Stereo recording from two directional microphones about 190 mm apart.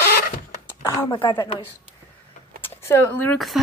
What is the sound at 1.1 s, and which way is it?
Speech, 20° left (ahead or behind).